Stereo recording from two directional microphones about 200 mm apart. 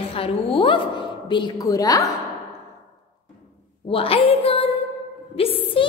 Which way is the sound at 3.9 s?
30° left (ahead or behind).